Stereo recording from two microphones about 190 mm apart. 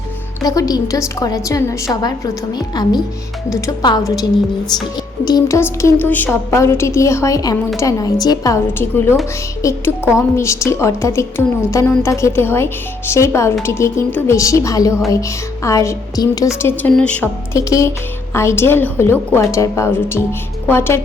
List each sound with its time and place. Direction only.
0.4 s a woman's voice: 20° left (ahead or behind)